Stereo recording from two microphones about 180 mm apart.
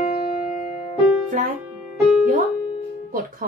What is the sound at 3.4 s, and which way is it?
Speech, 50° right (ahead or behind).